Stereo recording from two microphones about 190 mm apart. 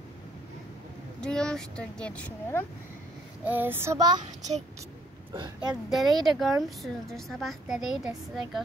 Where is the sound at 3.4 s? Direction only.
10° right (ahead or behind).